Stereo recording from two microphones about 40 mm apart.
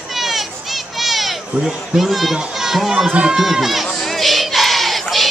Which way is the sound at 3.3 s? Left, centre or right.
Centre.